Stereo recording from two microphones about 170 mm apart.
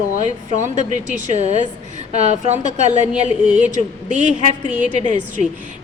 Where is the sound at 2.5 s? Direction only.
45° right (ahead or behind).